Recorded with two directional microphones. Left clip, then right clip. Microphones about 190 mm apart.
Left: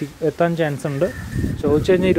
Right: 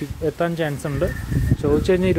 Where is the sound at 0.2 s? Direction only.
10° left (ahead or behind).